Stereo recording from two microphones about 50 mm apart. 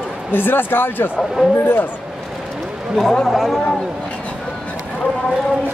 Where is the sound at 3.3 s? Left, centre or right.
Centre.